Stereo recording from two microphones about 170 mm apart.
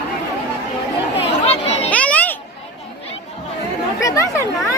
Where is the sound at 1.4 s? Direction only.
40° left (ahead or behind).